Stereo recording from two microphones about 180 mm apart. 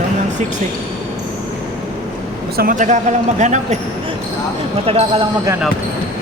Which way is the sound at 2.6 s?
50° right (ahead or behind).